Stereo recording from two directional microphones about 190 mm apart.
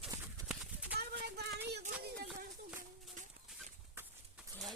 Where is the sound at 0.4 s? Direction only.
5° right (ahead or behind).